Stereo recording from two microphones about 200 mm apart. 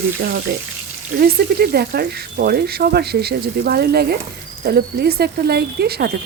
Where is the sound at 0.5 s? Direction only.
55° right (ahead or behind).